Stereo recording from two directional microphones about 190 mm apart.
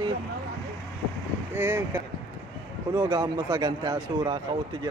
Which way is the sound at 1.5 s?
10° right (ahead or behind).